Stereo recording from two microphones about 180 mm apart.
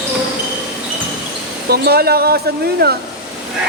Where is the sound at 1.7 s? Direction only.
60° right (ahead or behind).